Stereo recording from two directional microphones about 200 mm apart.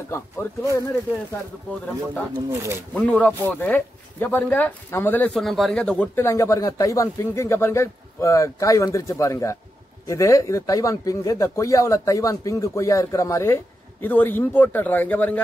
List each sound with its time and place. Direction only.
0.1 s speech: 15° left (ahead or behind)
2.3 s speech: 15° right (ahead or behind)
2.9 s speech: 5° left (ahead or behind)